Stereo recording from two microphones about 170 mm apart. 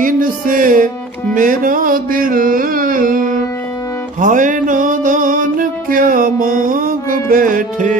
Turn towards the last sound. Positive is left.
turn(degrees=-50)  # may be behind; listen again after turning